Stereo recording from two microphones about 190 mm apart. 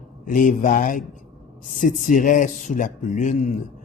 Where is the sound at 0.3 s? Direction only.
45° left (ahead or behind).